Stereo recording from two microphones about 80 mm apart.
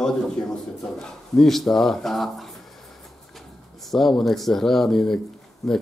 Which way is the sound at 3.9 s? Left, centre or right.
Centre.